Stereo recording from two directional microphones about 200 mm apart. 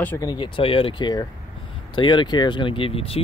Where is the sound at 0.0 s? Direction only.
10° left (ahead or behind).